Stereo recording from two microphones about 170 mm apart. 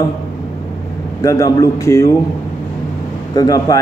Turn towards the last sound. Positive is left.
turn(degrees=20)  # may be behind; listen again after turning